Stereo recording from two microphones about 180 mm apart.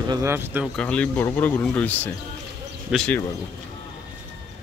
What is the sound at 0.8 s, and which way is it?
Speech, 5° left (ahead or behind).